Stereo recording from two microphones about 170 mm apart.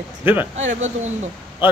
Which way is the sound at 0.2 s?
10° right (ahead or behind).